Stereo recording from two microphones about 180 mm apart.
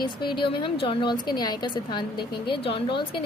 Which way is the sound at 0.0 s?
25° left (ahead or behind).